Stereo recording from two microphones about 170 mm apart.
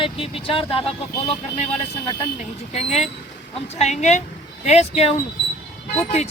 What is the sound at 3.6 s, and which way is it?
Speech, 40° left (ahead or behind).